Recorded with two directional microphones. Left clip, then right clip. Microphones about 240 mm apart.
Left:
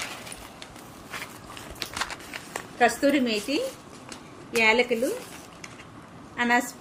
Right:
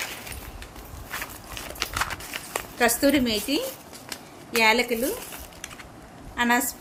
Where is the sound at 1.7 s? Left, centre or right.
Centre.